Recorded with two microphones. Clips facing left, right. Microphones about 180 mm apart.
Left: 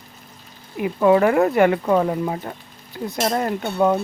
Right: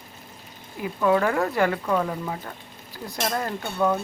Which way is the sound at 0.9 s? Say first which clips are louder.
Left 6 dB; 25° left (ahead or behind).